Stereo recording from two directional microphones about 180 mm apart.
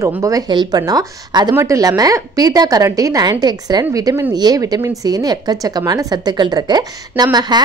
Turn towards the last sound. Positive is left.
turn(degrees=-25)  # may be behind; listen again after turning